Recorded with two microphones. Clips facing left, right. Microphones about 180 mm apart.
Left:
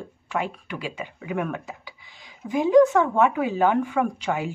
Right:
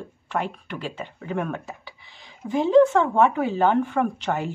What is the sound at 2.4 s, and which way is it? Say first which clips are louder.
Speech: even; 30° right (ahead or behind).